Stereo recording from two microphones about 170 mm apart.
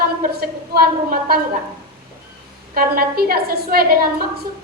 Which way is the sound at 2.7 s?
60° right (ahead or behind).